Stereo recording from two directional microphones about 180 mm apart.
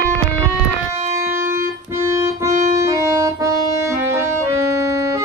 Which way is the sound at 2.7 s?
15° right (ahead or behind).